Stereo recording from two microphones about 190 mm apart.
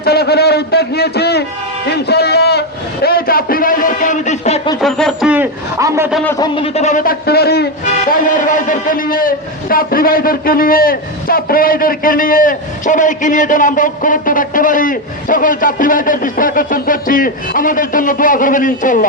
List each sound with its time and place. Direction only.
0.0 s a man's voice: 55° left (ahead or behind)
1.9 s a sound: 60° left (ahead or behind); by 4.7 s 35° left (ahead or behind)
4.8 s a man's voice: centre (ahead or behind); by 6.1 s 15° right (ahead or behind)
6.2 s speech: 15° left (ahead or behind)
6.5 s a man's voice: 30° left (ahead or behind); by 7.7 s 55° left (ahead or behind)
8.1 s a man's voice: 45° left (ahead or behind)